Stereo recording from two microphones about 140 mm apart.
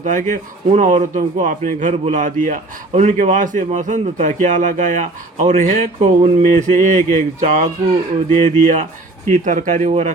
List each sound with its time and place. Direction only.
0.0 s a man's voice: 65° right (ahead or behind)